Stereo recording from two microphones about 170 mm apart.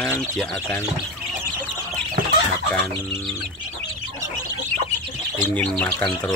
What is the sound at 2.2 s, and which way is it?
Chicken, 50° right (ahead or behind).